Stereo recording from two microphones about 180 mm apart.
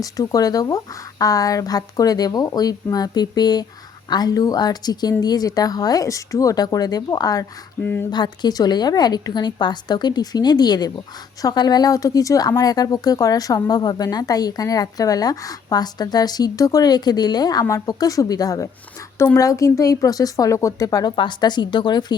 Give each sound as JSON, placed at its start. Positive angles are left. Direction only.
{"t": 0.0, "sound": "speech", "side_deg": 20}
{"t": 7.8, "sound": "speech", "side_deg": 10}
{"t": 8.1, "sound": "speech", "side_deg": 25}